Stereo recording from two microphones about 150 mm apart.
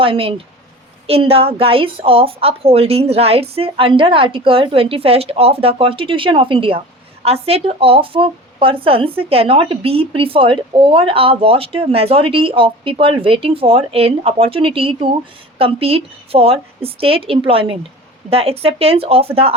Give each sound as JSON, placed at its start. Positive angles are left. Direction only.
{"t": 0.0, "sound": "speech", "side_deg": -40}